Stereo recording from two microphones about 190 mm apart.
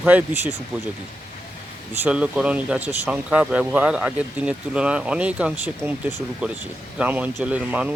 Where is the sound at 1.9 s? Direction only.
5° right (ahead or behind).